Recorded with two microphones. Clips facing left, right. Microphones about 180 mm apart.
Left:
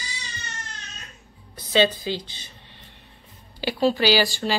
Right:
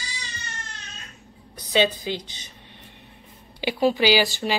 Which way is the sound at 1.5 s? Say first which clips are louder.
Left 1 dB; 15° right (ahead or behind).